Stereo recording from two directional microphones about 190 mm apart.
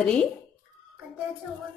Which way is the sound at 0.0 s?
5° left (ahead or behind).